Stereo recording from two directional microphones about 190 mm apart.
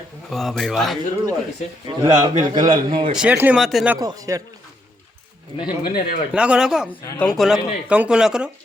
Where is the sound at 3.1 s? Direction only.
5° right (ahead or behind).